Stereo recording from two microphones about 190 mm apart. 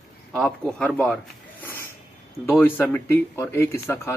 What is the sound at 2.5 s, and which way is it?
Speech, 10° left (ahead or behind).